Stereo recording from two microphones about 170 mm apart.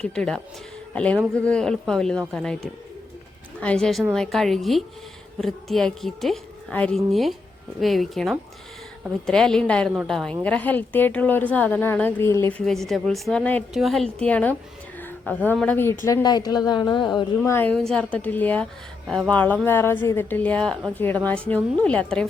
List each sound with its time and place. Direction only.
0.0 s a woman's voice: 5° left (ahead or behind)
3.6 s a woman's voice: 5° left (ahead or behind); by 17.5 s 25° left (ahead or behind)
17.5 s a woman's voice: 10° left (ahead or behind)